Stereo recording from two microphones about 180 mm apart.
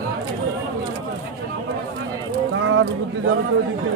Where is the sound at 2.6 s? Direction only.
90° right.